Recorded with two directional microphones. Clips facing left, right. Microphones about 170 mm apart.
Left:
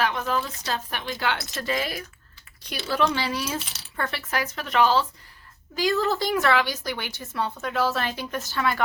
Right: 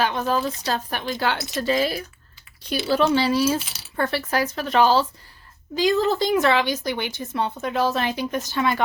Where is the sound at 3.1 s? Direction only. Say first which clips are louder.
Right 9 dB; 30° right (ahead or behind).